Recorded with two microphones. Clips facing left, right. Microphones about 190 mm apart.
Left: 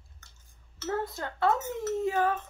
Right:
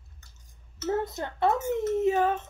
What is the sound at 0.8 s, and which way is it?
Speech, 20° right (ahead or behind).